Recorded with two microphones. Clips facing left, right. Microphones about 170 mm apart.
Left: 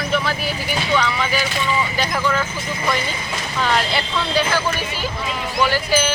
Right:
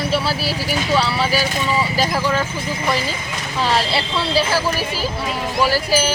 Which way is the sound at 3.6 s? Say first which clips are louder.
Right 1 dB; 30° right (ahead or behind).